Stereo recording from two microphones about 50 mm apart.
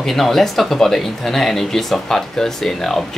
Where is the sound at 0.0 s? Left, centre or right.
Centre.